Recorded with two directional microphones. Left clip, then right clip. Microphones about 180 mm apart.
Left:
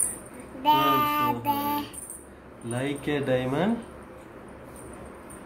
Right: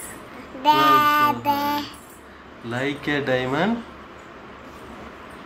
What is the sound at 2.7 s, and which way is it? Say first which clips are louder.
Speech: right 4 dB; 10° left (ahead or behind).